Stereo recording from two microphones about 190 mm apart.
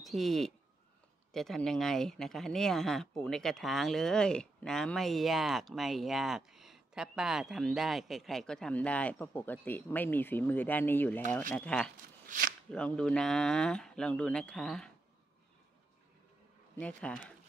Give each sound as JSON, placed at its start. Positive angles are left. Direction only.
{"t": 0.0, "sound": "speech", "side_deg": 0}
{"t": 12.3, "sound": "shuffling cards", "side_deg": -50}
{"t": 12.7, "sound": "speech", "side_deg": 5}
{"t": 16.7, "sound": "speech", "side_deg": 5}